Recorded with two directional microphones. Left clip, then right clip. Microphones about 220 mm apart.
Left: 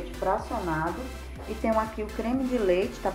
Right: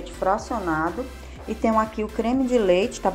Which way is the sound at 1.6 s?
35° right (ahead or behind).